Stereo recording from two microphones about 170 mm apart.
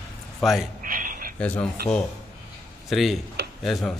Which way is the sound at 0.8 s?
55° right (ahead or behind).